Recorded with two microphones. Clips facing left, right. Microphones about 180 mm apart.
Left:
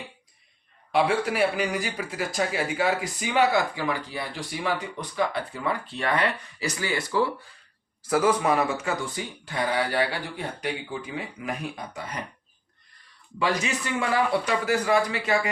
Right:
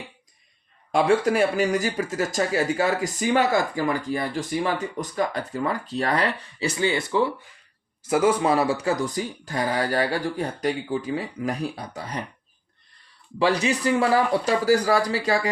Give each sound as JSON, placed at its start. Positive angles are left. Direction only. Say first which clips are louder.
{"t": 0.9, "sound": "speech", "louder": "right 4 dB", "side_deg": -45}
{"t": 13.4, "sound": "speech", "louder": "right 5 dB", "side_deg": -30}